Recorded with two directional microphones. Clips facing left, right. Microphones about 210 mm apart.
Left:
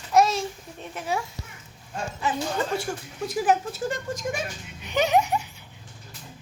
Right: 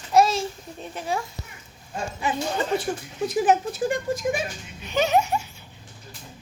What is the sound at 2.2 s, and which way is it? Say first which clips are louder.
Speech: right 1 dB; 15° right (ahead or behind).